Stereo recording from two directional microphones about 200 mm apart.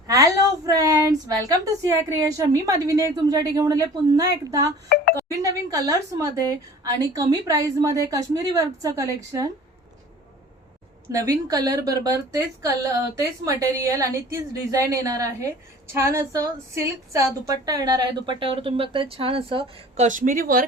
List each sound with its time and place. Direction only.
0.1 s a woman's voice: 15° right (ahead or behind)
11.1 s a woman's voice: 15° right (ahead or behind)
20.1 s speech: 40° right (ahead or behind)